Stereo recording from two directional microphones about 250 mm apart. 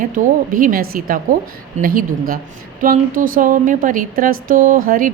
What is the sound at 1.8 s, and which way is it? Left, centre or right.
A woman's voice, right.